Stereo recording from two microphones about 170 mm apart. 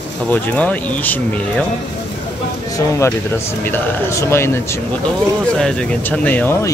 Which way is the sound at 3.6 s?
15° left (ahead or behind).